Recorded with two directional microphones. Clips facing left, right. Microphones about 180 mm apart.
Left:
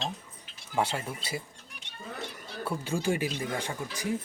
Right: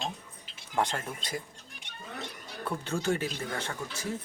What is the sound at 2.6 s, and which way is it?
Speech, 10° left (ahead or behind).